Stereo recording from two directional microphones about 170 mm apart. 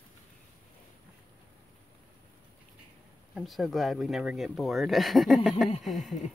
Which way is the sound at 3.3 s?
Centre (ahead or behind).